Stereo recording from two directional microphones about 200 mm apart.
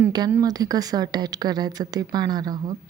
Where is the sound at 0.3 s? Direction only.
15° right (ahead or behind).